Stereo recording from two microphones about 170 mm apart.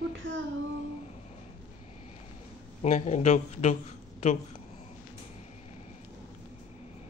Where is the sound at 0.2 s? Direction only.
90° right.